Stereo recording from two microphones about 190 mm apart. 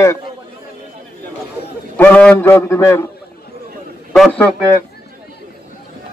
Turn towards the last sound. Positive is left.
turn(degrees=5)  # may be behind; listen again after turning